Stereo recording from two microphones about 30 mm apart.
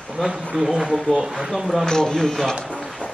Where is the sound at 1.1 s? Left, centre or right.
Left.